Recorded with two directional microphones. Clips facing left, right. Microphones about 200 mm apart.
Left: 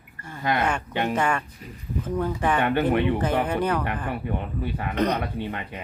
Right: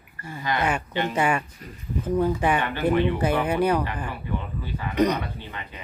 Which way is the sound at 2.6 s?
60° left (ahead or behind).